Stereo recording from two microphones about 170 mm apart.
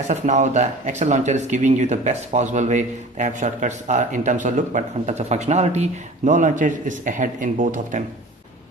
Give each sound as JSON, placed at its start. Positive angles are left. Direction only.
{"t": 0.1, "sound": "speech", "side_deg": -45}